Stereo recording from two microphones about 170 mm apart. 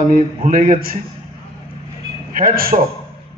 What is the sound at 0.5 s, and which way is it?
Speech, 50° right (ahead or behind).